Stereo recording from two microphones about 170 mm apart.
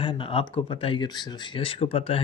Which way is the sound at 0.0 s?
30° left (ahead or behind).